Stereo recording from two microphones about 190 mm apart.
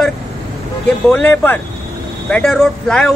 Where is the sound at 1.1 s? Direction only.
10° left (ahead or behind).